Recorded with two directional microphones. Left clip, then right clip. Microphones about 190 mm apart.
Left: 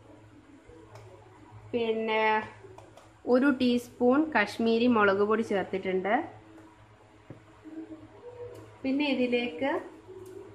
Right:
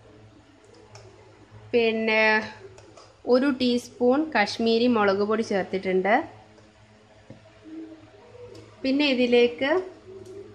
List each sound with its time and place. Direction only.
1.7 s speech: 45° right (ahead or behind)
3.3 s a woman's voice: 15° right (ahead or behind)
8.8 s a woman's voice: 60° right (ahead or behind)